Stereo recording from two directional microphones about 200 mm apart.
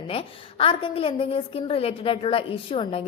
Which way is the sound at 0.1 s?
25° left (ahead or behind).